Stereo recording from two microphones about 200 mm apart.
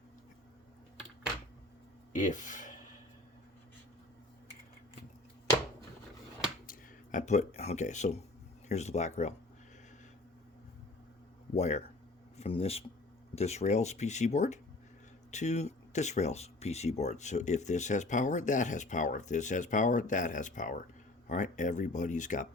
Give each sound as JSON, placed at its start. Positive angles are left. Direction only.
{"t": 2.1, "sound": "speech", "side_deg": 40}
{"t": 6.7, "sound": "speech", "side_deg": 40}
{"t": 11.5, "sound": "speech", "side_deg": 35}